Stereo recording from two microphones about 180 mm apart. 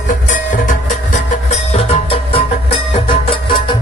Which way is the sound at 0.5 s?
45° left (ahead or behind).